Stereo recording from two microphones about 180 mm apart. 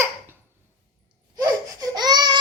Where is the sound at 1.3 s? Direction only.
20° right (ahead or behind).